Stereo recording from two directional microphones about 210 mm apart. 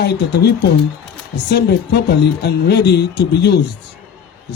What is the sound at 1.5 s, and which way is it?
Speech, 50° left (ahead or behind).